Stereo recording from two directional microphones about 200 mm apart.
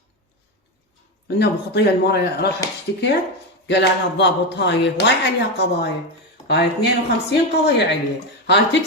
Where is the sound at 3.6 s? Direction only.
60° left (ahead or behind).